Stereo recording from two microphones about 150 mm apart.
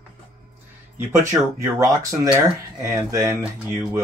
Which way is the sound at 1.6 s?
20° right (ahead or behind).